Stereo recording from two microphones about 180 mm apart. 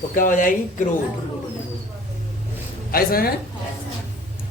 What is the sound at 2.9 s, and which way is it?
Speech, 55° left (ahead or behind).